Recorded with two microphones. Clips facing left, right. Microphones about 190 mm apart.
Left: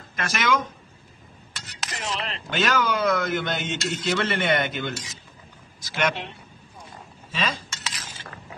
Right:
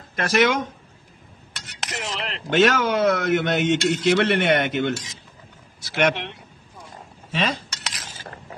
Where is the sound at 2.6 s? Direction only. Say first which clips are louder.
Right 4 dB; 65° right (ahead or behind).